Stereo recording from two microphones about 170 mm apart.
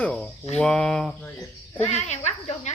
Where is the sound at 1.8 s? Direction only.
40° left (ahead or behind).